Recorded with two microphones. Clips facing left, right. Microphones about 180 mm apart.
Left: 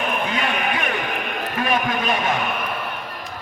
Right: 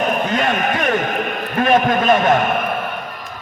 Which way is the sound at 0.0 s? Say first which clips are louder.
Right 5 dB; 45° right (ahead or behind).